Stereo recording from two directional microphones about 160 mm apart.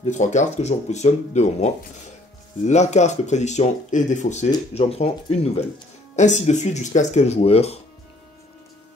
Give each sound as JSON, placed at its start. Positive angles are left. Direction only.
{"t": 0.0, "sound": "speech", "side_deg": 50}